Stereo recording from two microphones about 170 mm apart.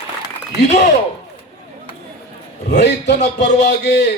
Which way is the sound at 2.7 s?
85° left.